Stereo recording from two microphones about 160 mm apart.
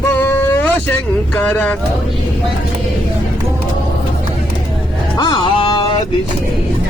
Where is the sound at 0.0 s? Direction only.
10° left (ahead or behind).